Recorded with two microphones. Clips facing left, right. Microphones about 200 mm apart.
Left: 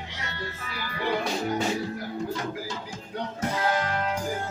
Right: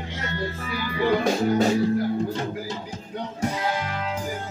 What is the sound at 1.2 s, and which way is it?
Speech, 40° right (ahead or behind).